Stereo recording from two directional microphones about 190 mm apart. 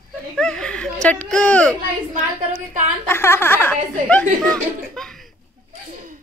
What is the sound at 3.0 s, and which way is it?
A woman's voice, 10° left (ahead or behind).